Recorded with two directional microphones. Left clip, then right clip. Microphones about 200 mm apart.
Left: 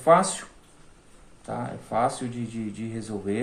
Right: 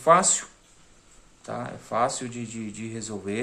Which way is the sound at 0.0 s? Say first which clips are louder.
Even; 30° right (ahead or behind).